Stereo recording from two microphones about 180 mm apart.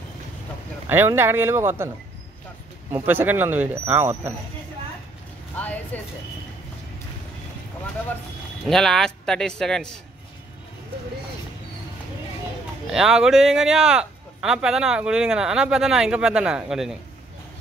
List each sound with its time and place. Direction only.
0.8 s speech: 10° right (ahead or behind)
2.9 s speech: 10° right (ahead or behind)
5.6 s speech: 10° left (ahead or behind)
8.6 s speech: centre (ahead or behind)
12.9 s speech: 5° right (ahead or behind)